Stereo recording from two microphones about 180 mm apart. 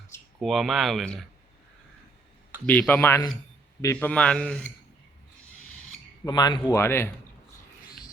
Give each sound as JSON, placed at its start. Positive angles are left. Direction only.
{"t": 0.3, "sound": "speech", "side_deg": 0}
{"t": 2.6, "sound": "speech", "side_deg": 10}
{"t": 6.2, "sound": "speech", "side_deg": 20}